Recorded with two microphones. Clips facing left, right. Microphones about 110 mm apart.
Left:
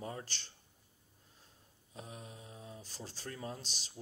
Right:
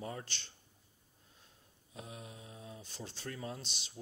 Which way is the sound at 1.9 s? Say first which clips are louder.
Even; 35° left (ahead or behind).